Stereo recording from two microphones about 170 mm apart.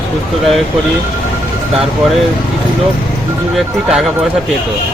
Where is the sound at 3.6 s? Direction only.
Centre (ahead or behind).